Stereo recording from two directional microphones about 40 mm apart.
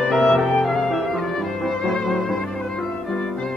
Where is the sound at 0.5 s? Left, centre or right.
Centre.